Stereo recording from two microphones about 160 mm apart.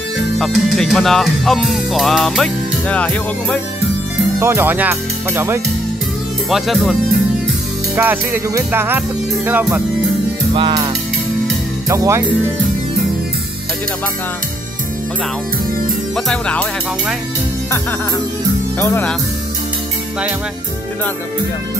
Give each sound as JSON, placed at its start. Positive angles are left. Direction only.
{"t": 0.4, "sound": "music", "side_deg": 0}
{"t": 4.4, "sound": "speech", "side_deg": -15}
{"t": 6.5, "sound": "music", "side_deg": 0}
{"t": 7.9, "sound": "music", "side_deg": -10}
{"t": 10.5, "sound": "music", "side_deg": -30}
{"t": 11.9, "sound": "music", "side_deg": -20}
{"t": 16.3, "sound": "speech", "side_deg": 5}
{"t": 18.8, "sound": "speech", "side_deg": 15}